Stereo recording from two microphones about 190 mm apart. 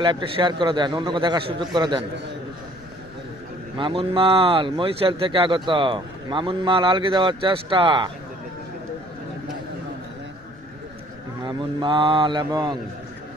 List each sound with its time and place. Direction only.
0.0 s speech: 25° right (ahead or behind)
3.7 s speech: 25° right (ahead or behind)
11.4 s speech: 25° right (ahead or behind)